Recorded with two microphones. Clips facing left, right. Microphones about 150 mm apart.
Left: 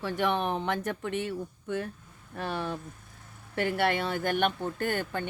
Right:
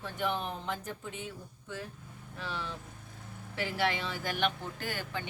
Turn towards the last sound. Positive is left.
turn(degrees=55)  # may be behind; listen again after turning